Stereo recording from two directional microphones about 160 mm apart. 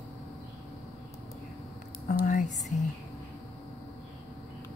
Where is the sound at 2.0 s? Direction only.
55° left (ahead or behind).